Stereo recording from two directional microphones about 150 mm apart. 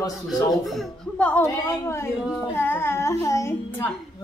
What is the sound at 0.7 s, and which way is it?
A woman's voice, 10° left (ahead or behind).